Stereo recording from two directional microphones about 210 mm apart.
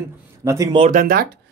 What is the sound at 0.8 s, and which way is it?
Speech, 40° right (ahead or behind).